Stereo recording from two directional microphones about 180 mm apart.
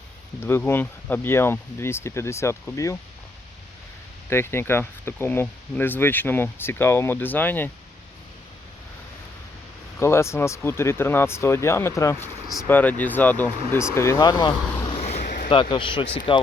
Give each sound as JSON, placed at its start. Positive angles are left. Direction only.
{"t": 0.3, "sound": "speech", "side_deg": 10}
{"t": 4.3, "sound": "speech", "side_deg": 15}
{"t": 10.0, "sound": "speech", "side_deg": 15}
{"t": 14.8, "sound": "a sound", "side_deg": 35}
{"t": 15.2, "sound": "a sound", "side_deg": 55}
{"t": 15.7, "sound": "a man's voice", "side_deg": 25}